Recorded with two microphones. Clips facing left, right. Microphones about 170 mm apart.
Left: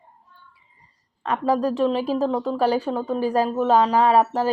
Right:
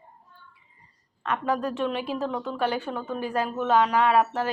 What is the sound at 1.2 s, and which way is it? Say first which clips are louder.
Speech: left 5 dB; 35° left (ahead or behind).